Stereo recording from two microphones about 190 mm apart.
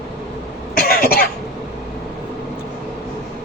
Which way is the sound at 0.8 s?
50° left (ahead or behind).